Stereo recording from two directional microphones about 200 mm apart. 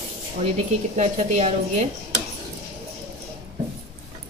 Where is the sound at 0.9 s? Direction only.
35° right (ahead or behind).